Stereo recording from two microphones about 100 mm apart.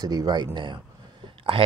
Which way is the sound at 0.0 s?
40° right (ahead or behind).